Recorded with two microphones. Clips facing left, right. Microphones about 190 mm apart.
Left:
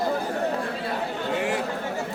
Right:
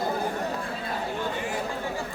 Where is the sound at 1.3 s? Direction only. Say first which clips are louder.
Left 6 dB; 70° left (ahead or behind).